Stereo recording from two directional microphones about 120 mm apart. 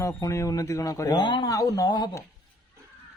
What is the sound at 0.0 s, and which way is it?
Speech, 25° left (ahead or behind).